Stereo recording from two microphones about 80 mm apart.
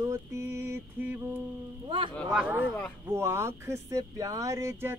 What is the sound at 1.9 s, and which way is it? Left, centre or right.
Speech, right.